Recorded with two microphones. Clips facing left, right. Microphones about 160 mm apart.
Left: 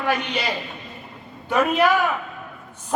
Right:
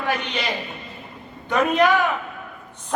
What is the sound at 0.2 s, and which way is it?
Speech, 10° left (ahead or behind).